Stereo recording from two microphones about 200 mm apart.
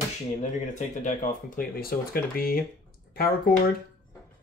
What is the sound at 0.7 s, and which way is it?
Speech, 40° left (ahead or behind).